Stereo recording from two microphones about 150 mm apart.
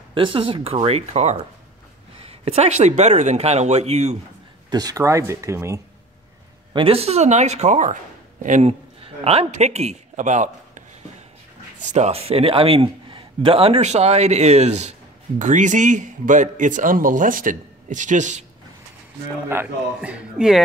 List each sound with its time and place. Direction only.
0.1 s a man's voice: 35° right (ahead or behind)
4.6 s speech: 25° right (ahead or behind)
6.7 s speech: 40° right (ahead or behind); by 8.7 s 55° right (ahead or behind)
9.0 s a man's voice: 40° right (ahead or behind)
11.8 s a man's voice: 50° right (ahead or behind)
19.5 s a man's voice: 10° right (ahead or behind)